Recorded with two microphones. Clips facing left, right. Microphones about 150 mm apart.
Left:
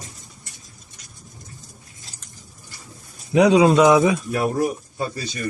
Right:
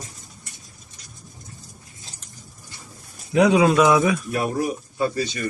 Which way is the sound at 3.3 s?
15° left (ahead or behind).